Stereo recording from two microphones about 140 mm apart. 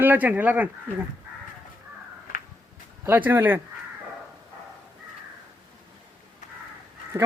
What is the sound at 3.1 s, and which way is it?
Speech, 15° right (ahead or behind).